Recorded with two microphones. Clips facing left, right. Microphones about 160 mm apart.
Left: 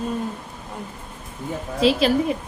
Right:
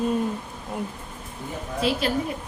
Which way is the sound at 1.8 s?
90° left.